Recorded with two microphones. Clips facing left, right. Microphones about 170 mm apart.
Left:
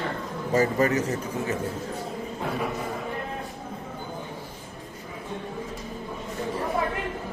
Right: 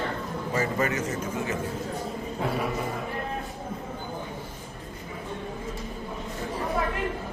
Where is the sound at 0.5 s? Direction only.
35° left (ahead or behind).